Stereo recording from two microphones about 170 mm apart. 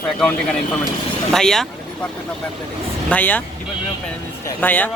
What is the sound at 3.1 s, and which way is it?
Speech, 10° left (ahead or behind).